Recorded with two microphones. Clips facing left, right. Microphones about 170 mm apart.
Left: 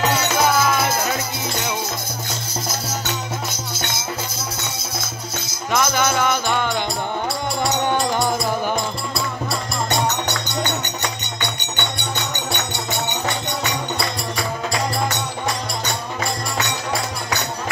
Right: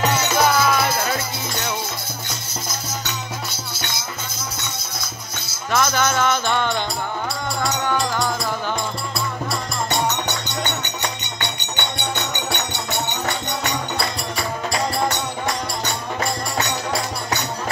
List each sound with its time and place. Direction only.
5.5 s music: 15° left (ahead or behind)